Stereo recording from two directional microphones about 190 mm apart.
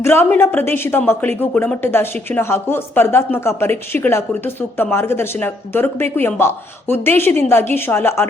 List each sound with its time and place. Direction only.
0.0 s a woman's voice: 10° left (ahead or behind)